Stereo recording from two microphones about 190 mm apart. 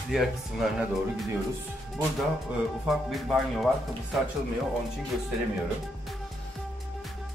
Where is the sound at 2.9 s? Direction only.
Centre (ahead or behind).